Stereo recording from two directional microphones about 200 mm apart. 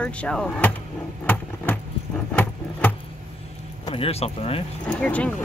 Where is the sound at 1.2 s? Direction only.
5° left (ahead or behind).